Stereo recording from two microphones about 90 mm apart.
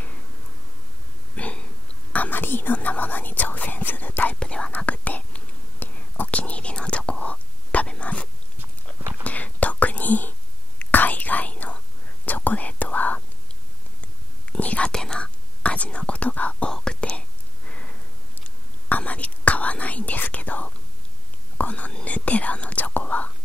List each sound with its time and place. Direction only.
1.3 s a sound: 15° left (ahead or behind)
2.1 s whispering: 20° left (ahead or behind)
18.9 s whispering: 15° left (ahead or behind)
21.5 s speech: 15° left (ahead or behind)